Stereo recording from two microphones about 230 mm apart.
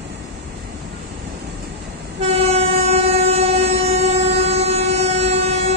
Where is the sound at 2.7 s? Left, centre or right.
Right.